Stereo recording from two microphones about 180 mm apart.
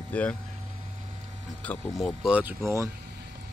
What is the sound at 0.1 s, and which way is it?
Speech, 10° left (ahead or behind).